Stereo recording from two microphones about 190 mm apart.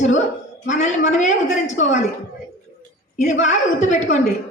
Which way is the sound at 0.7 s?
40° left (ahead or behind).